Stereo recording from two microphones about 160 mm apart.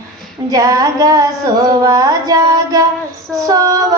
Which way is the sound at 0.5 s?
20° right (ahead or behind).